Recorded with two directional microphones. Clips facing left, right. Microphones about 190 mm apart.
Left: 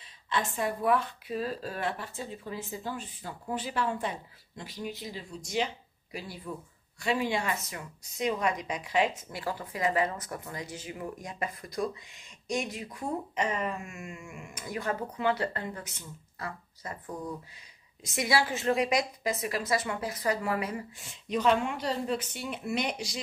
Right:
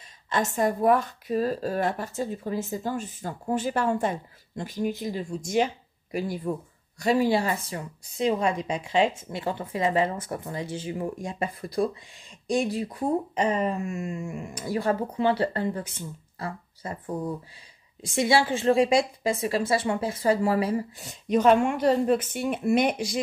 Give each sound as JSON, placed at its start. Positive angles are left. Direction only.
{"t": 0.0, "sound": "speech", "side_deg": -45}